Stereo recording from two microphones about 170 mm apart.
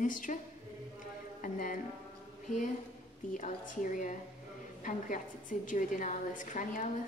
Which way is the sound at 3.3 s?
50° left (ahead or behind).